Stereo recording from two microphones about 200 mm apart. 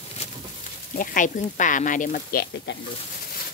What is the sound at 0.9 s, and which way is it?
Speech, 40° left (ahead or behind).